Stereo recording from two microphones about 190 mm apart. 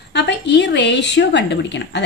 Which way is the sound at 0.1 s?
65° left (ahead or behind).